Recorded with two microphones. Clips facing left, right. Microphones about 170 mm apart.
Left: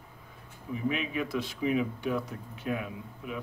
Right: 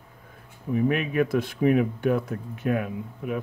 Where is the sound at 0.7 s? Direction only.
55° right (ahead or behind).